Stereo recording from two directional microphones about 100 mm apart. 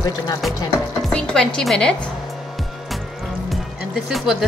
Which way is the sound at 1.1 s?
5° left (ahead or behind).